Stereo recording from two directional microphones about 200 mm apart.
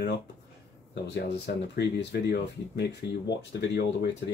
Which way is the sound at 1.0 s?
55° left (ahead or behind).